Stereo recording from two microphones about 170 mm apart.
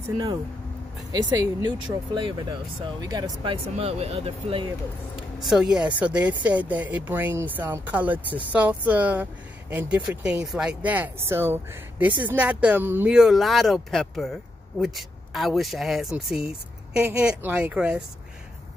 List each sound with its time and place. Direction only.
1.1 s speech: 20° right (ahead or behind)
3.7 s speech: 35° right (ahead or behind)
5.4 s speech: 5° right (ahead or behind)